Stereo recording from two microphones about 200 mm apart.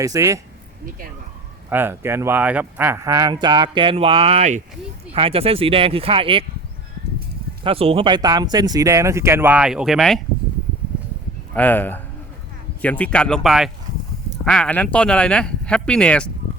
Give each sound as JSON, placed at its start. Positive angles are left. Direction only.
{"t": 0.0, "sound": "speech", "side_deg": -15}
{"t": 1.7, "sound": "speech", "side_deg": -10}
{"t": 7.6, "sound": "speech", "side_deg": -30}
{"t": 11.5, "sound": "speech", "side_deg": 10}